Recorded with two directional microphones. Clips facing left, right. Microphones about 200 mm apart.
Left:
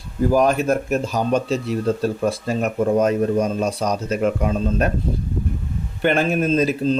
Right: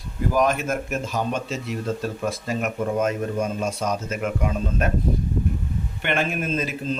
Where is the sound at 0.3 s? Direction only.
35° left (ahead or behind).